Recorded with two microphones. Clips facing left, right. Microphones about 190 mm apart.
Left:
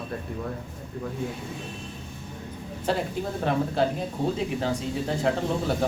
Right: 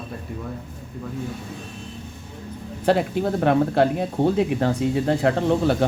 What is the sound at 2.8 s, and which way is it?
Speech, 65° right (ahead or behind).